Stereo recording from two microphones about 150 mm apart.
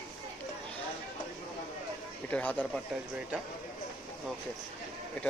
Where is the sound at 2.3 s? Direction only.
10° left (ahead or behind).